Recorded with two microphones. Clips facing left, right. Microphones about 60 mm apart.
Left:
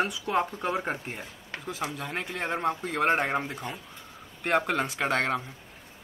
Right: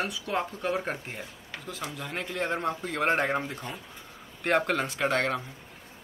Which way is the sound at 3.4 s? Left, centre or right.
Centre.